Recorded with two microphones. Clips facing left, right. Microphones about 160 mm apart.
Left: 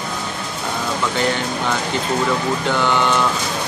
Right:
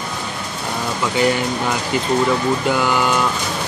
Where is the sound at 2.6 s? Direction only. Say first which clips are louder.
Left 2 dB; 5° right (ahead or behind).